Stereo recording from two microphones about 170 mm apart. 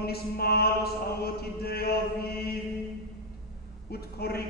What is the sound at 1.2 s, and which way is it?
Chant, 65° left (ahead or behind).